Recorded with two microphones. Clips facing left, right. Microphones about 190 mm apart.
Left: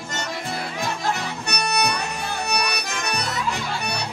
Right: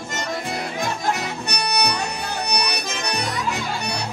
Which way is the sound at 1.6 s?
20° right (ahead or behind).